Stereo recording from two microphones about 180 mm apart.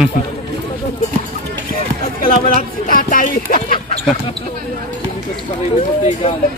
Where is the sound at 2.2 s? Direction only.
50° left (ahead or behind).